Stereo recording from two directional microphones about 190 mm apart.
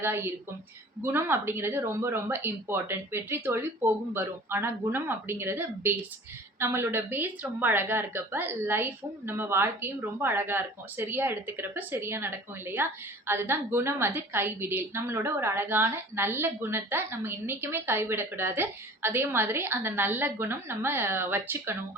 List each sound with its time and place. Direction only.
0.0 s a woman's voice: 10° right (ahead or behind)